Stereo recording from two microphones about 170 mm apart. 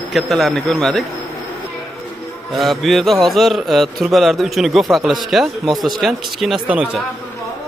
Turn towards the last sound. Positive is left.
turn(degrees=-5)  # may be behind; listen again after turning